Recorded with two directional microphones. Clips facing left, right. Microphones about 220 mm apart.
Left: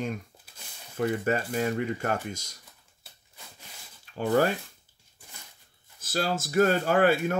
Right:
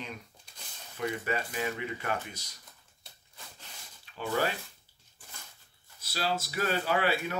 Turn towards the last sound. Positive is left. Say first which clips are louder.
# left 7 dB
turn(degrees=50)  # may be behind; listen again after turning